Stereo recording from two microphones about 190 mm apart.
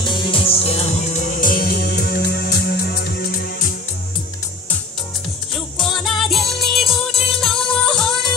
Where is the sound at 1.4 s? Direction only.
50° left (ahead or behind).